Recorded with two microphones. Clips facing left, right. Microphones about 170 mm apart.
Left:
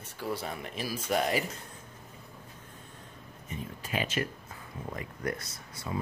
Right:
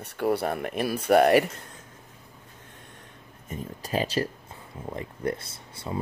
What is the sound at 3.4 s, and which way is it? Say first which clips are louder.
Speech: right 4 dB; 40° right (ahead or behind).